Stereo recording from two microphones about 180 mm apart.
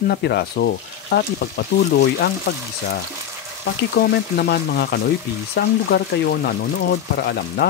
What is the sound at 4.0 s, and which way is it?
Speech, 60° left (ahead or behind).